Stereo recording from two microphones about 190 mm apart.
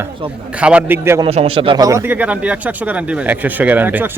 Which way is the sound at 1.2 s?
30° right (ahead or behind).